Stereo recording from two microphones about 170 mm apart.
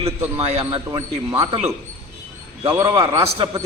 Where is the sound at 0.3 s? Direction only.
35° right (ahead or behind).